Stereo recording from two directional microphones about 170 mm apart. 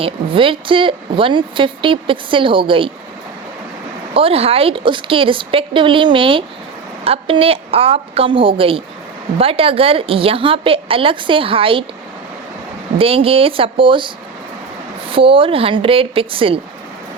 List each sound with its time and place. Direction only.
0.0 s a woman's voice: 30° right (ahead or behind)
4.1 s a woman's voice: 35° right (ahead or behind)
13.0 s a woman's voice: 35° right (ahead or behind)
15.1 s a woman's voice: 30° right (ahead or behind)